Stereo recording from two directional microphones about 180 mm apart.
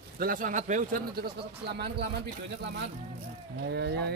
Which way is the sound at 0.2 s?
50° right (ahead or behind).